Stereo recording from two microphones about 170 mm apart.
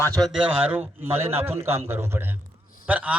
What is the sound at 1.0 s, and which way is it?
A man's voice, 15° right (ahead or behind).